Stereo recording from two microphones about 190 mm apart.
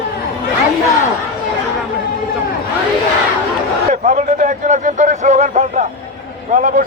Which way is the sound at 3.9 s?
40° right (ahead or behind).